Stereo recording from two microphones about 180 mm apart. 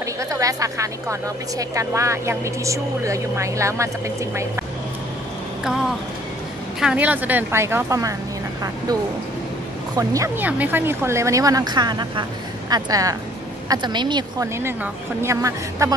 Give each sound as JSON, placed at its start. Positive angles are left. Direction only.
{"t": 0.0, "sound": "a woman's voice", "side_deg": -15}
{"t": 6.8, "sound": "speech", "side_deg": -5}
{"t": 9.9, "sound": "speech", "side_deg": -15}
{"t": 14.6, "sound": "speech", "side_deg": -15}